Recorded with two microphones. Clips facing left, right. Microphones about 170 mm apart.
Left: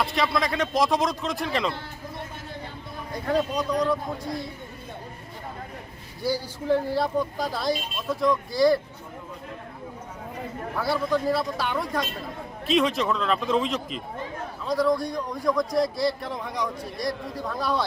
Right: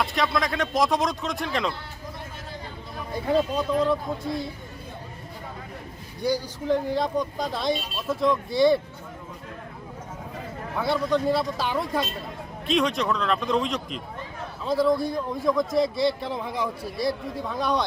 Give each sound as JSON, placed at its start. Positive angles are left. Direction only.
{"t": 0.0, "sound": "speech", "side_deg": 0}
{"t": 3.2, "sound": "speech", "side_deg": 0}
{"t": 3.6, "sound": "speech", "side_deg": -25}
{"t": 6.3, "sound": "speech", "side_deg": -15}
{"t": 7.0, "sound": "speech", "side_deg": 5}
{"t": 10.8, "sound": "speech", "side_deg": 5}
{"t": 12.6, "sound": "a man's voice", "side_deg": 0}
{"t": 16.5, "sound": "speech", "side_deg": -30}
{"t": 17.1, "sound": "speech", "side_deg": 0}